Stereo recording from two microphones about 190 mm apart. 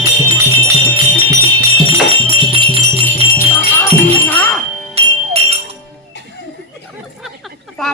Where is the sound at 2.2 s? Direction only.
30° right (ahead or behind).